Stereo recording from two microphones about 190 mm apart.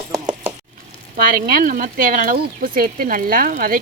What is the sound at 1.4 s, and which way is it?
Speech, 50° right (ahead or behind).